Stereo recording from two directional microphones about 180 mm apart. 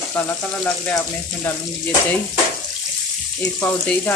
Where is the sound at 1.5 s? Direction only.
10° left (ahead or behind).